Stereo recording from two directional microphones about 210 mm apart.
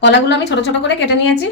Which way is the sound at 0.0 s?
55° left (ahead or behind).